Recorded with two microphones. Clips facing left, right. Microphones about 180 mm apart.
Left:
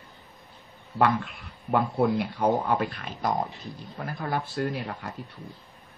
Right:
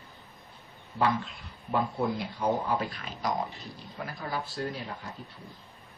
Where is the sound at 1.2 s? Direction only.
65° left (ahead or behind).